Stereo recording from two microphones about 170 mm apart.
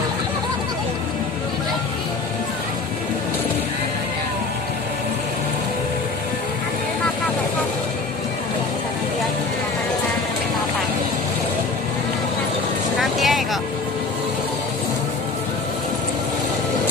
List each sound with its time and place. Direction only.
13.0 s vehicle: centre (ahead or behind)